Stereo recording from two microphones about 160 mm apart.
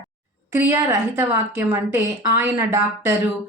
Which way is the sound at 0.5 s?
15° right (ahead or behind).